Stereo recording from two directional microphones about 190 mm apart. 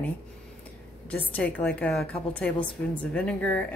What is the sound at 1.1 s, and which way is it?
Speech, 10° left (ahead or behind).